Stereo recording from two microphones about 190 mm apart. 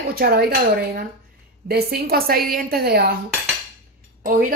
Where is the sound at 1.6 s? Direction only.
55° right (ahead or behind).